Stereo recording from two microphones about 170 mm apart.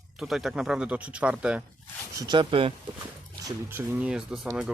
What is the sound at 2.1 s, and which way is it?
Speech, 25° right (ahead or behind).